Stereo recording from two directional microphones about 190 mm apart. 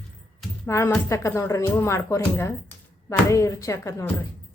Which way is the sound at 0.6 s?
15° left (ahead or behind).